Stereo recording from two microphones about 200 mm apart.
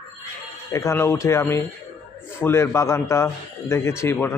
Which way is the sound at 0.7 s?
15° left (ahead or behind).